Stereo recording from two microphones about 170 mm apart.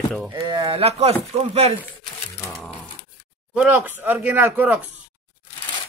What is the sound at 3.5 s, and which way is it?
Speech, 10° right (ahead or behind).